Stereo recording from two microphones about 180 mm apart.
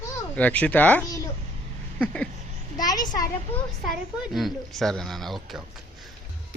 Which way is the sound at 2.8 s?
20° left (ahead or behind).